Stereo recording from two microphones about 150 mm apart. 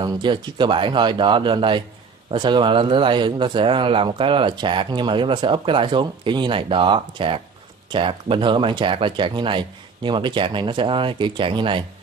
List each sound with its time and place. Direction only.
0.0 s speech: 30° right (ahead or behind)